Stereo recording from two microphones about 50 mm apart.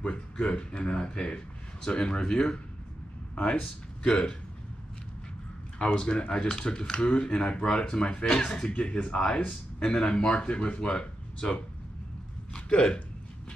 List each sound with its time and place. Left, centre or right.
0.0 s speech: left
4.0 s speech: centre
5.8 s a man's voice: centre